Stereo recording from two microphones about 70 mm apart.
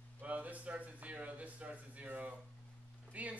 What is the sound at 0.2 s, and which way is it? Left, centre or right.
Speech, right.